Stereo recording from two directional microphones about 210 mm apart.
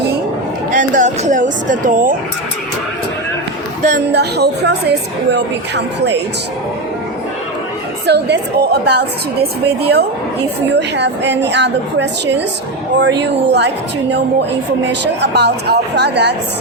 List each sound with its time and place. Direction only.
0.7 s speech: 35° right (ahead or behind)
4.1 s a woman's voice: 50° right (ahead or behind)
8.0 s a woman's voice: 50° right (ahead or behind)
15.0 s a woman's voice: 55° right (ahead or behind)